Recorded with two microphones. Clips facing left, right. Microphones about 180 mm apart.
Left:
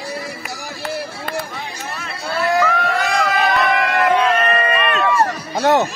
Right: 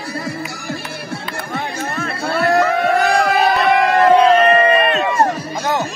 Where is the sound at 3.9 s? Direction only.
40° right (ahead or behind).